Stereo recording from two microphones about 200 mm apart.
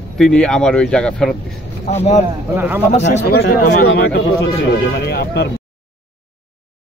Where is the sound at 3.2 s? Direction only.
55° left (ahead or behind).